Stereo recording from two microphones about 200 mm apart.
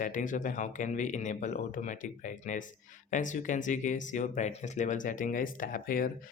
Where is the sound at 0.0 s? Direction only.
40° left (ahead or behind).